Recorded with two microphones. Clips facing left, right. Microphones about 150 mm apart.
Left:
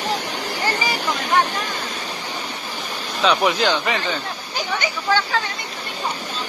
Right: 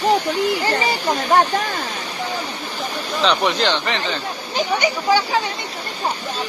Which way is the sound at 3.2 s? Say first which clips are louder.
Left 1 dB; 5° left (ahead or behind).